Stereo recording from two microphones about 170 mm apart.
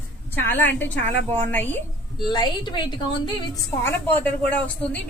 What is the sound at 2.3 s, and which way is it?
A woman's voice, 25° left (ahead or behind).